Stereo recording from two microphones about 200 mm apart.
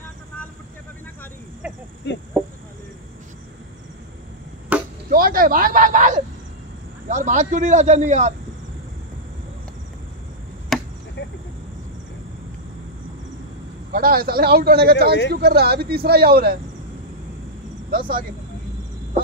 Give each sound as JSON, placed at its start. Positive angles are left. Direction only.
{"t": 2.1, "sound": "chicken", "side_deg": 60}
{"t": 4.7, "sound": "chop", "side_deg": -10}
{"t": 5.1, "sound": "a sound", "side_deg": -45}
{"t": 7.1, "sound": "a man's voice", "side_deg": -35}
{"t": 10.7, "sound": "chop", "side_deg": 0}
{"t": 11.2, "sound": "a sound", "side_deg": 60}
{"t": 13.9, "sound": "a man's voice", "side_deg": -50}
{"t": 17.9, "sound": "a man's voice", "side_deg": -45}